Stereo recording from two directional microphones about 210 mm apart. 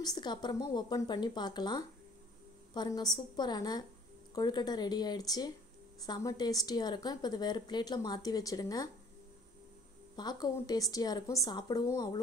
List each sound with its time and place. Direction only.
0.0 s a woman's voice: 20° left (ahead or behind)
10.1 s a woman's voice: 20° left (ahead or behind)